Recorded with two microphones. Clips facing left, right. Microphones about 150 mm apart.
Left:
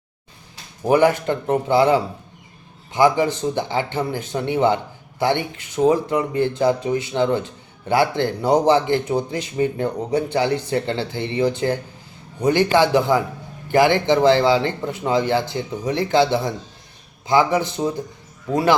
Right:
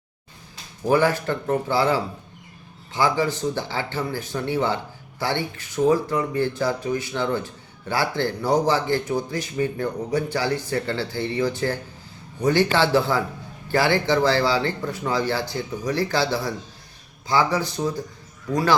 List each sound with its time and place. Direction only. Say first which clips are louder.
0.9 s a man's voice: left 4 dB; 20° left (ahead or behind)